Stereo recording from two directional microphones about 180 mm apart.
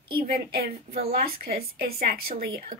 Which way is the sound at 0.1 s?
60° right (ahead or behind).